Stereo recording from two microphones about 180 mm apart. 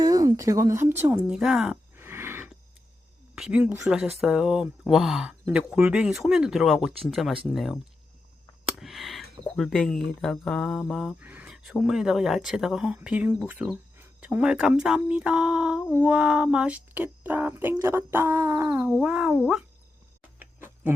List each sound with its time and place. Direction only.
0.0 s speech: 20° right (ahead or behind); by 7.8 s centre (ahead or behind)
8.6 s a sound: centre (ahead or behind)
9.4 s speech: centre (ahead or behind)